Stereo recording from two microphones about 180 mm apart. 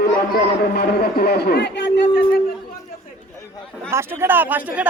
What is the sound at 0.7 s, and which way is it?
Speech, 60° left (ahead or behind).